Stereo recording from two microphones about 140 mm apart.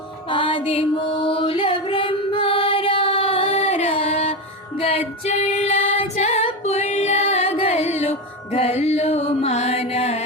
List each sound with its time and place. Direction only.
0.3 s music: 35° left (ahead or behind)
4.8 s female singing: 45° left (ahead or behind)
6.2 s music: 55° left (ahead or behind)